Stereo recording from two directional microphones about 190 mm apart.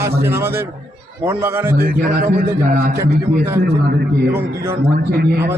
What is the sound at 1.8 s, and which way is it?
A man's voice, 50° right (ahead or behind).